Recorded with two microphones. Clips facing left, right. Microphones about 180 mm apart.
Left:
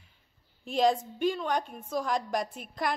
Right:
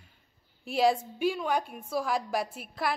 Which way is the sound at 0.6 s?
10° right (ahead or behind).